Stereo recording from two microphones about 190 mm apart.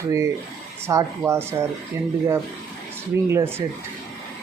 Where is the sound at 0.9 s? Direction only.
15° right (ahead or behind).